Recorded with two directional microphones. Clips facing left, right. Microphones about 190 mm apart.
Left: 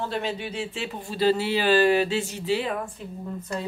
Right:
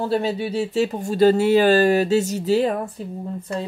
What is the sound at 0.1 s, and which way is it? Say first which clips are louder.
Speech: right 8 dB; 35° right (ahead or behind).